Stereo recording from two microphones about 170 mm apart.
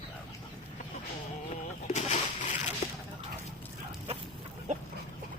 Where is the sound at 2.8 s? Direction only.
45° left (ahead or behind).